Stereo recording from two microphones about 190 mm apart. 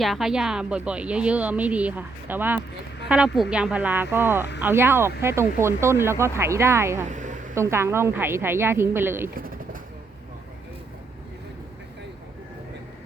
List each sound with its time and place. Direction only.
0.0 s speech: centre (ahead or behind)
7.0 s a sound: 40° right (ahead or behind)
7.5 s speech: 15° right (ahead or behind)
9.3 s pigeon: 50° right (ahead or behind)